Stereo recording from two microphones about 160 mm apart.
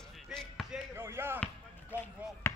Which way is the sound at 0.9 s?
15° right (ahead or behind).